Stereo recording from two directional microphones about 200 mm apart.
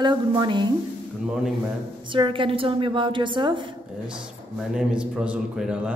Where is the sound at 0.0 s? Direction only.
25° right (ahead or behind).